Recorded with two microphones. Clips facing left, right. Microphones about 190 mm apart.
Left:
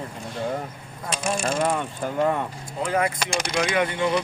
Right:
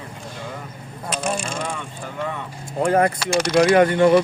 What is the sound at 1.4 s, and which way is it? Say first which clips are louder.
Speech: left 5 dB; 45° left (ahead or behind).